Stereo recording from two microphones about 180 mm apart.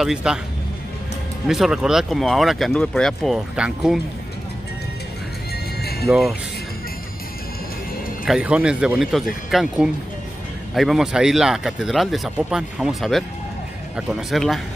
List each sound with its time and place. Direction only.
0.0 s speech: 5° right (ahead or behind)
1.5 s speech: 5° right (ahead or behind)
5.8 s music: 60° left (ahead or behind)
6.0 s speech: centre (ahead or behind)
8.3 s speech: 5° right (ahead or behind)